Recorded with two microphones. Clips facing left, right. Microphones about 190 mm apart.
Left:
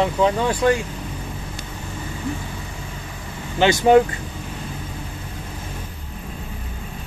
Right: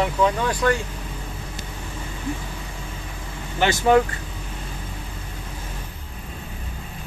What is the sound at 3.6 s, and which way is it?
Speech, 20° left (ahead or behind).